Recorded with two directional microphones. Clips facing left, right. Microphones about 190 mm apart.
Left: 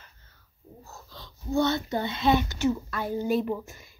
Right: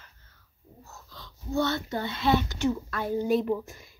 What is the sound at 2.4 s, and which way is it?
Speech, 5° left (ahead or behind).